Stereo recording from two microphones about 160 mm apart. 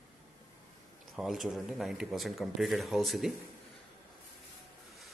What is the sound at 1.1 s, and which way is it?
Speech, centre (ahead or behind).